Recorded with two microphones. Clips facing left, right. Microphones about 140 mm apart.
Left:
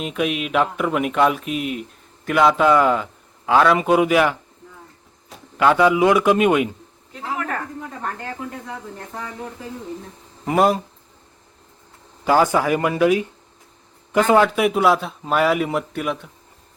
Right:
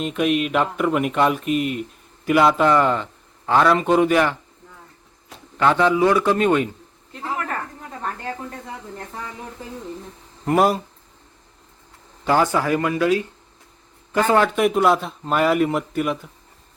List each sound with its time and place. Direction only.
0.0 s speech: centre (ahead or behind)
5.5 s a man's voice: 10° left (ahead or behind)
10.4 s speech: centre (ahead or behind)
12.2 s a man's voice: 10° left (ahead or behind)
14.4 s speech: centre (ahead or behind)